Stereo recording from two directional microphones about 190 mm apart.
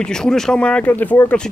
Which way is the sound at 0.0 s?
5° left (ahead or behind).